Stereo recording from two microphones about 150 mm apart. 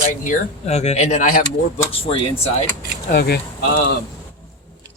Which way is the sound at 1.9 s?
40° left (ahead or behind).